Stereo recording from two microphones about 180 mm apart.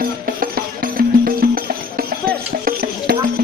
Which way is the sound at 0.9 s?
55° right (ahead or behind).